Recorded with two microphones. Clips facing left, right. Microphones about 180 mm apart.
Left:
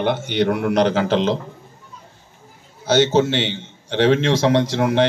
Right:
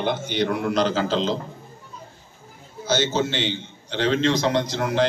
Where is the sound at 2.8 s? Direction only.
70° left (ahead or behind).